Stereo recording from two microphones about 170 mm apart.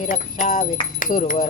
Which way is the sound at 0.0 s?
50° left (ahead or behind).